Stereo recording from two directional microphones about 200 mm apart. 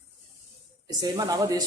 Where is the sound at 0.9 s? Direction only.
20° right (ahead or behind).